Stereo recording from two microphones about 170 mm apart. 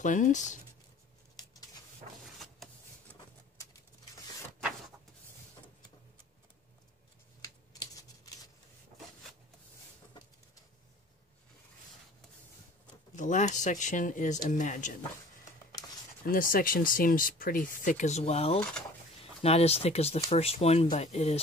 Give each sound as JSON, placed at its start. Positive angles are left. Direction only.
{"t": 0.0, "sound": "speech", "side_deg": 50}
{"t": 13.1, "sound": "speech", "side_deg": 45}
{"t": 16.3, "sound": "speech", "side_deg": 55}
{"t": 18.6, "sound": "speech", "side_deg": 5}
{"t": 19.4, "sound": "speech", "side_deg": 35}